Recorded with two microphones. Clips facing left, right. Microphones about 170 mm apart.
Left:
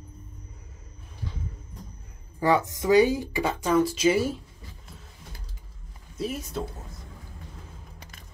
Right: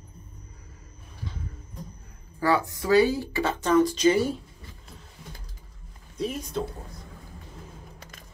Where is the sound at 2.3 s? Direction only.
20° left (ahead or behind).